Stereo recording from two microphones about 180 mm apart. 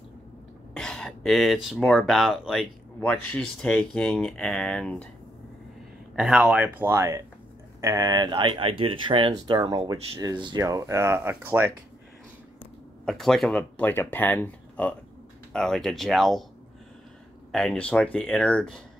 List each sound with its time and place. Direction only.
0.7 s speech: 5° left (ahead or behind)
6.1 s speech: 5° right (ahead or behind)
13.0 s speech: centre (ahead or behind)
17.5 s speech: 5° left (ahead or behind)